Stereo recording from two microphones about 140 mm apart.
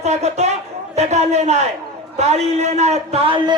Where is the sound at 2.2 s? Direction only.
50° right (ahead or behind).